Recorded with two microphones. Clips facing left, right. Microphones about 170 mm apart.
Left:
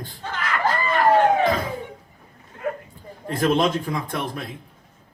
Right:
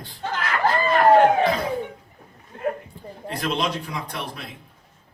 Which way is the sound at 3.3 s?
50° left (ahead or behind).